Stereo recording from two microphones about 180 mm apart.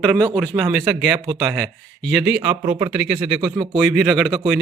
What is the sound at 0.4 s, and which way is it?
A man's voice, centre (ahead or behind).